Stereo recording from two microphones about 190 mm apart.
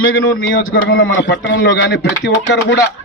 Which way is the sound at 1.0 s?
80° left.